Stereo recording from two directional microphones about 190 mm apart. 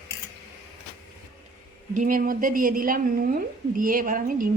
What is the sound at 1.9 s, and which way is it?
Speech, 45° right (ahead or behind).